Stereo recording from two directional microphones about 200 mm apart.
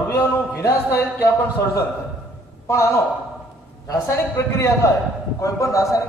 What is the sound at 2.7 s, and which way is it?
A man's voice, 15° left (ahead or behind).